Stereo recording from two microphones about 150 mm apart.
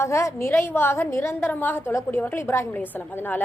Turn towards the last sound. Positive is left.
turn(degrees=15)  # may be behind; listen again after turning